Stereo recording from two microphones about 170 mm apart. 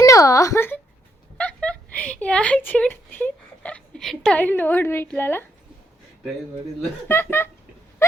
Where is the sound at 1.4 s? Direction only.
5° left (ahead or behind).